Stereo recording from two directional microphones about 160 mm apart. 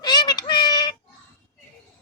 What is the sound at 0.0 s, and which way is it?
Child singing, 25° left (ahead or behind).